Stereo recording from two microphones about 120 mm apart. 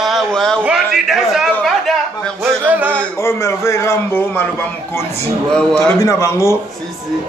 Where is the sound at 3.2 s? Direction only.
25° left (ahead or behind).